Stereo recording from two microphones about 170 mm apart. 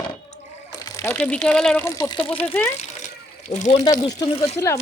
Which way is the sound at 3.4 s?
45° left (ahead or behind).